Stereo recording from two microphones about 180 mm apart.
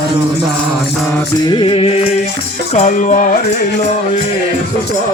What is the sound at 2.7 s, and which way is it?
Music, 45° left (ahead or behind).